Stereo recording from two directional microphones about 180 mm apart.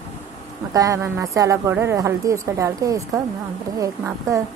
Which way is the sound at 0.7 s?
15° right (ahead or behind).